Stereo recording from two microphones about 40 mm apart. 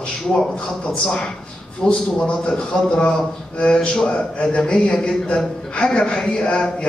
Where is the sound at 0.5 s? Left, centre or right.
Left.